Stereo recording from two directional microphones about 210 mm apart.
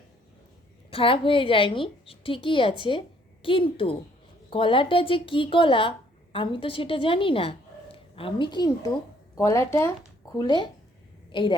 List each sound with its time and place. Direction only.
0.9 s a woman's voice: 25° left (ahead or behind)